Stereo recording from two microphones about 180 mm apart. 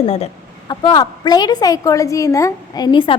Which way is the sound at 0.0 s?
35° left (ahead or behind).